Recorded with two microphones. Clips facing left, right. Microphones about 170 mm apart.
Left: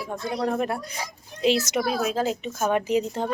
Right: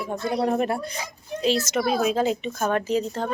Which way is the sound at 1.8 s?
Centre (ahead or behind).